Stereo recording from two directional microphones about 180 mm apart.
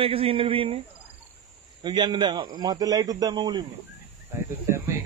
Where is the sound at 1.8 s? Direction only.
25° right (ahead or behind).